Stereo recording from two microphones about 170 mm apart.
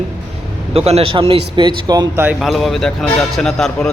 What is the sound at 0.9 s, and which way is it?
Speech, 35° right (ahead or behind).